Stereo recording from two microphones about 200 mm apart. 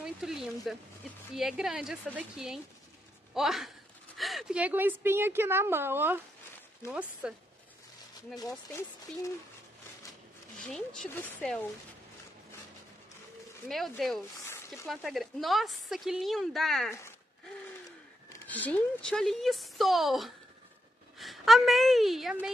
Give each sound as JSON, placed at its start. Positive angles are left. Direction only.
{"t": 0.0, "sound": "a woman's voice", "side_deg": 0}
{"t": 8.4, "sound": "speech", "side_deg": 20}
{"t": 10.7, "sound": "speech", "side_deg": 5}
{"t": 13.7, "sound": "speech", "side_deg": 0}
{"t": 18.3, "sound": "a woman's voice", "side_deg": 10}